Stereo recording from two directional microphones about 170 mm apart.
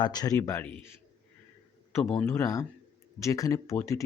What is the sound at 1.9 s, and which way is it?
Speech, 15° left (ahead or behind).